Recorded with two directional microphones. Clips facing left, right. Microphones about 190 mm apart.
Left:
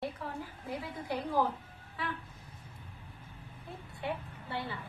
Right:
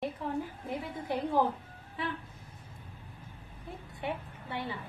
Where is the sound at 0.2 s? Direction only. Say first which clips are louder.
Right 6 dB; 20° right (ahead or behind).